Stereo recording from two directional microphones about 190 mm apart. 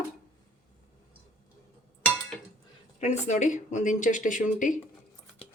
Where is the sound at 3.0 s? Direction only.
35° left (ahead or behind).